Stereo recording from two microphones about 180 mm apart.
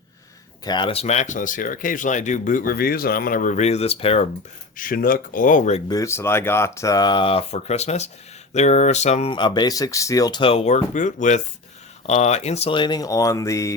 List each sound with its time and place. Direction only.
0.6 s speech: 25° left (ahead or behind)
4.8 s speech: 50° left (ahead or behind)
5.9 s speech: 15° left (ahead or behind)